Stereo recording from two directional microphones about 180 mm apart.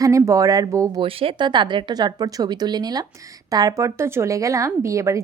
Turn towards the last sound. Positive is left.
turn(degrees=-15)  # may be behind; listen again after turning